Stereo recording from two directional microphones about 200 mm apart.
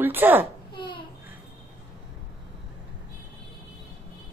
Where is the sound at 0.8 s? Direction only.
25° left (ahead or behind).